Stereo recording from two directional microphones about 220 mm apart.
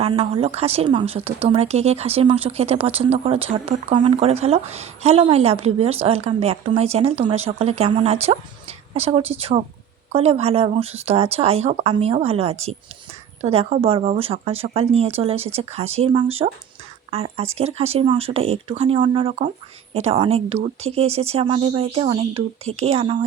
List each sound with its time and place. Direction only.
0.0 s speech: 25° right (ahead or behind)